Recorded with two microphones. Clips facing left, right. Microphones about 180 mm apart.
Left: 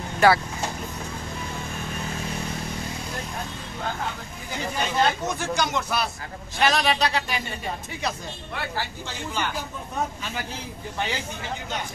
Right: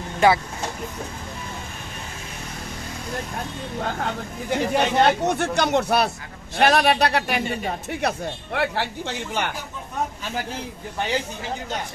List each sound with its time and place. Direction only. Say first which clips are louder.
0.2 s speech: right 1 dB; 20° right (ahead or behind)
3.8 s speech: right 3 dB; 60° right (ahead or behind)
8.5 s speech: right 7 dB; 70° right (ahead or behind)